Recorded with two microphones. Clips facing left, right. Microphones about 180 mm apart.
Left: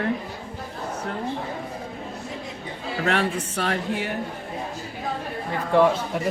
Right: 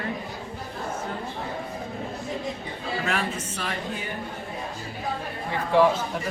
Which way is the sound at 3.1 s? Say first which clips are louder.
Left 4 dB; 70° left (ahead or behind).